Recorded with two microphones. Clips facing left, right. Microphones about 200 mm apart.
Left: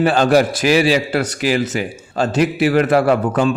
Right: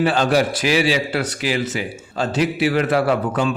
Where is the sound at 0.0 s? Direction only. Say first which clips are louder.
Left 4 dB; 45° left (ahead or behind).